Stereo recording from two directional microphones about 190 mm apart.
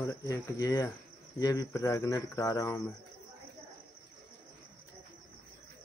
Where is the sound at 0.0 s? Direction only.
15° left (ahead or behind).